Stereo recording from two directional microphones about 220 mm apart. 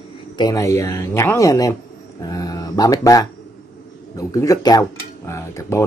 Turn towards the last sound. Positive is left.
turn(degrees=15)  # may be behind; listen again after turning